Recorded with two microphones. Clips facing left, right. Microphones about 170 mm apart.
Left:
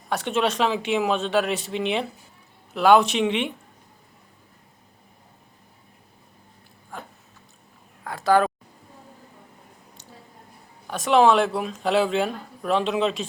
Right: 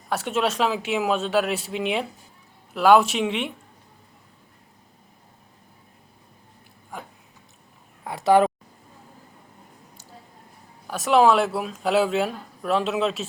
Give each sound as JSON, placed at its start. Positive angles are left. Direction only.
{"t": 0.1, "sound": "speech", "side_deg": -5}
{"t": 6.9, "sound": "a sound", "side_deg": -15}
{"t": 8.0, "sound": "speech", "side_deg": -20}
{"t": 10.8, "sound": "speech", "side_deg": -5}